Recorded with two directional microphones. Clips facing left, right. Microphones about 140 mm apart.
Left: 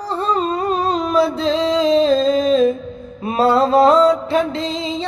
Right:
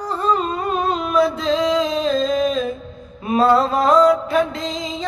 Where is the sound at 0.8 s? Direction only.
35° left (ahead or behind).